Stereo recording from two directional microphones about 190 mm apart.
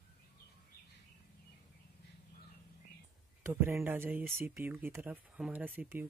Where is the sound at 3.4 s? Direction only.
10° right (ahead or behind).